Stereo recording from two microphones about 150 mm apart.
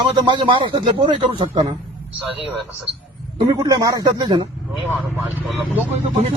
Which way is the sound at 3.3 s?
30° right (ahead or behind).